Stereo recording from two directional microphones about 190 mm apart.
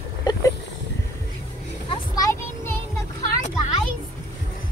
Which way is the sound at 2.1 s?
15° left (ahead or behind).